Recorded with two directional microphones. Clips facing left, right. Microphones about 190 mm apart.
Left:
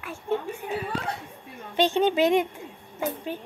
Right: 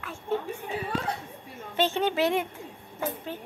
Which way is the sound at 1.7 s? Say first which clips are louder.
Left 4 dB; 15° left (ahead or behind).